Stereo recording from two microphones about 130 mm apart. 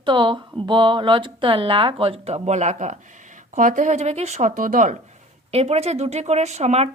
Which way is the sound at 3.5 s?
80° right.